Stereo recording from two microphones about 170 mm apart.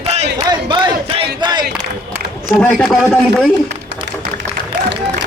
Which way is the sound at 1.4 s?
25° right (ahead or behind).